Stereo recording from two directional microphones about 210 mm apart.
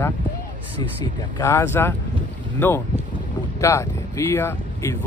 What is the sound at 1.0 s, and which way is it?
Speech, 15° left (ahead or behind).